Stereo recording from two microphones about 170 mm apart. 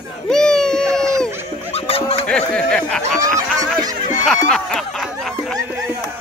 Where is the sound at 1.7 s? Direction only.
35° left (ahead or behind).